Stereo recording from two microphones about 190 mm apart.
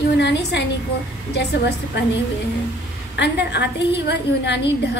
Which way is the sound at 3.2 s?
65° left (ahead or behind).